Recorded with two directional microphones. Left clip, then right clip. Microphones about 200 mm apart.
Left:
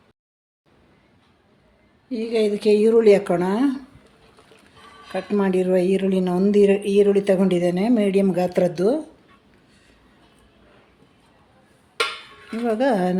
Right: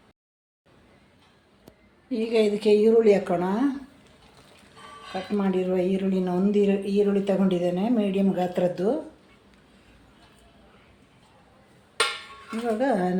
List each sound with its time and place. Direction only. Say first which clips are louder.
2.0 s a woman's voice: left 1 dB; 10° left (ahead or behind); by 3.7 s 50° left (ahead or behind)
5.3 s speech: left 6 dB; 55° left (ahead or behind)
12.6 s speech: left 4 dB; 45° left (ahead or behind)